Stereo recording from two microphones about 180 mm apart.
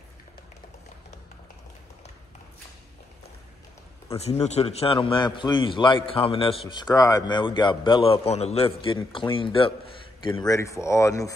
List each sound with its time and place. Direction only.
4.2 s a man's voice: 35° left (ahead or behind); by 11.3 s 20° left (ahead or behind)